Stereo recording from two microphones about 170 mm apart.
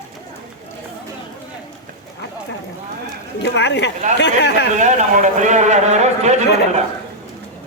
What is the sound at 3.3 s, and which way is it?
Speech, 90° left.